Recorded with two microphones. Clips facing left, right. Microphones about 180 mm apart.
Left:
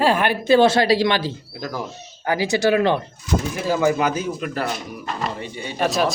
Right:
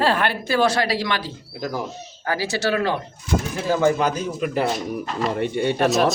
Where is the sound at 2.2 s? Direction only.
15° left (ahead or behind).